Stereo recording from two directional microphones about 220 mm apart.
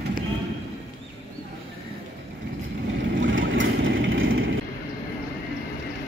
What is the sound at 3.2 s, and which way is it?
Vehicle, 60° right (ahead or behind).